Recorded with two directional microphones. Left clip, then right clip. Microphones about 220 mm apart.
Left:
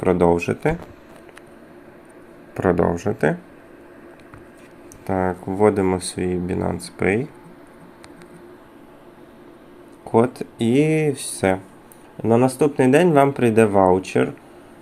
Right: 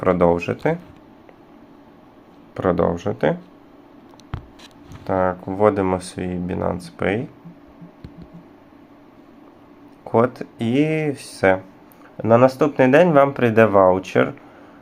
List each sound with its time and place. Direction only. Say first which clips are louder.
0.0 s speech: even; 20° left (ahead or behind)
2.6 s speech: even; 15° left (ahead or behind)
5.0 s speech: right 2 dB; 20° left (ahead or behind)
10.0 s speech: even; 20° left (ahead or behind)